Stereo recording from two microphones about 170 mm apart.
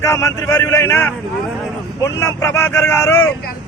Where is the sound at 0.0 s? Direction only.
20° left (ahead or behind).